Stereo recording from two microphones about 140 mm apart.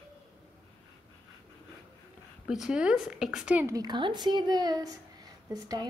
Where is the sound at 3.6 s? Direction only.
25° right (ahead or behind).